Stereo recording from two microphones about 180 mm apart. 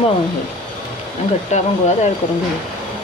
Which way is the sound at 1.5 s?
40° left (ahead or behind).